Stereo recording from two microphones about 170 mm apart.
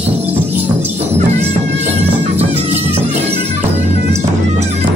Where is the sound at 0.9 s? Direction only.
40° right (ahead or behind).